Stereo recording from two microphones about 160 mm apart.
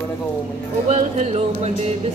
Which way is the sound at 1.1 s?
45° right (ahead or behind).